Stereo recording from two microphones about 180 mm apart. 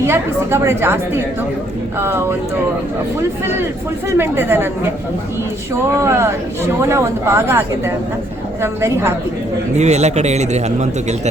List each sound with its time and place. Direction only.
0.0 s a woman's voice: 15° right (ahead or behind)
4.2 s a woman's voice: 15° right (ahead or behind)
6.0 s a woman's voice: 15° right (ahead or behind)
9.7 s a man's voice: 40° right (ahead or behind)